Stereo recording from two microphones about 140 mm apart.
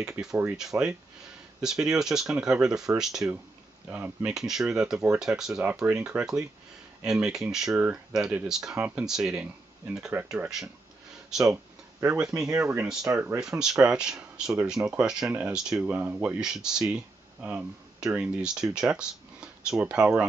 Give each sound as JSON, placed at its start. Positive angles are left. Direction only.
{"t": 0.4, "sound": "speech", "side_deg": -5}
{"t": 11.5, "sound": "a sound", "side_deg": -15}
{"t": 12.4, "sound": "speech", "side_deg": -20}
{"t": 13.4, "sound": "speech", "side_deg": -5}